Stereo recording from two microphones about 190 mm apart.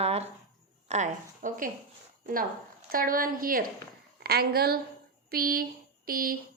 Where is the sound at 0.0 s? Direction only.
35° right (ahead or behind).